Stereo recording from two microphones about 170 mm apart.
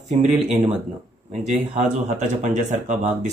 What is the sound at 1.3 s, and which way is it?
Speech, 45° right (ahead or behind).